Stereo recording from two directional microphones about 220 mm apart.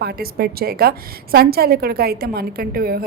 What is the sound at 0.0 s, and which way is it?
A woman's voice, 45° right (ahead or behind).